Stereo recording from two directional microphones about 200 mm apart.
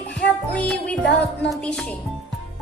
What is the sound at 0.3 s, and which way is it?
Music, 5° left (ahead or behind).